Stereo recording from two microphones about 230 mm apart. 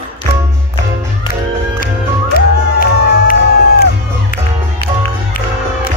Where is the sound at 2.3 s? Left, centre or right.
Left.